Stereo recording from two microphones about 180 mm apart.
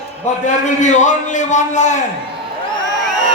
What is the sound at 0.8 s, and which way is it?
A man's voice, 40° left (ahead or behind).